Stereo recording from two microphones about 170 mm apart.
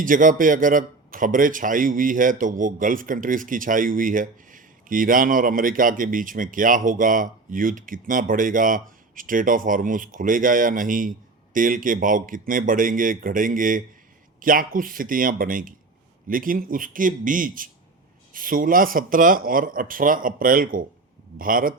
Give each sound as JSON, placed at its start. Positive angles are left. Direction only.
{"t": 0.0, "sound": "a man's voice", "side_deg": -50}